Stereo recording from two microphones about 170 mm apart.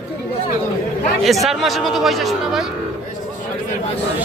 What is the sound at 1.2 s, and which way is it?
Speech, centre (ahead or behind).